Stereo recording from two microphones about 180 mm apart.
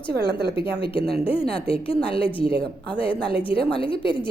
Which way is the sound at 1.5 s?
30° left (ahead or behind).